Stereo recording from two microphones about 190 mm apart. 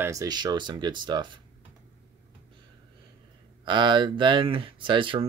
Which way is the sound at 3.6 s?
25° right (ahead or behind).